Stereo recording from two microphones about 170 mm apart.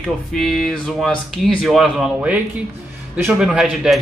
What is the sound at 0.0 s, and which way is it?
Speech, centre (ahead or behind).